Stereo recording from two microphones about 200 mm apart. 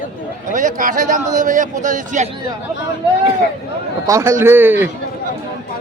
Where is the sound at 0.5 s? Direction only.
40° right (ahead or behind).